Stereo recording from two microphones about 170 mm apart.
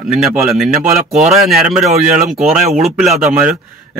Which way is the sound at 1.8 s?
40° right (ahead or behind).